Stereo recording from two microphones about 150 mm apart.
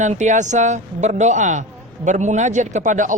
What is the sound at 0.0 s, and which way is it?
Speech, 55° right (ahead or behind).